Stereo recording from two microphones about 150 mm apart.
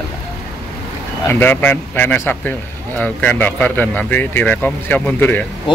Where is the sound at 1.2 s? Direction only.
10° left (ahead or behind).